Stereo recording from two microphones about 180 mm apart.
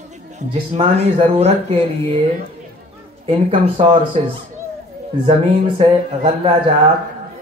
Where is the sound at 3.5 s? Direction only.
30° right (ahead or behind).